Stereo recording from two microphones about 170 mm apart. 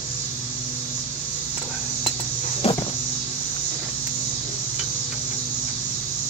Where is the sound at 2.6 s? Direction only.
35° left (ahead or behind).